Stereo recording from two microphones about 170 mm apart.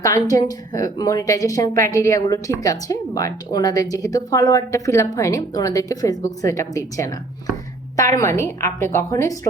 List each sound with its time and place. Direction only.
0.0 s a woman's voice: 20° left (ahead or behind)